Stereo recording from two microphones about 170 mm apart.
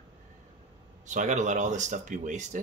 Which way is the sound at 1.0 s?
45° right (ahead or behind).